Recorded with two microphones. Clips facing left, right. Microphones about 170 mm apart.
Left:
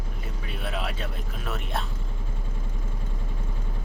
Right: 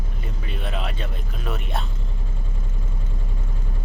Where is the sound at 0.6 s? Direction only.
5° left (ahead or behind).